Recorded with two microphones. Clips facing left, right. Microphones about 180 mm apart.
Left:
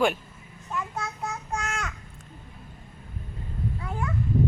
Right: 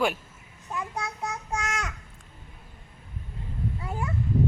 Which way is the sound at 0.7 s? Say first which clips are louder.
Left 1 dB; 15° right (ahead or behind).